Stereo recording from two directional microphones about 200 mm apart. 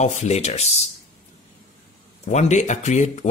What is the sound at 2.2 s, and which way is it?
Speech, 35° left (ahead or behind).